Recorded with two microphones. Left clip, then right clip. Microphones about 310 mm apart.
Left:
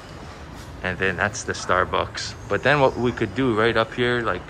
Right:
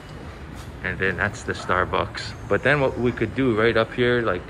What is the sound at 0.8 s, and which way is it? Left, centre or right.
Speech, centre.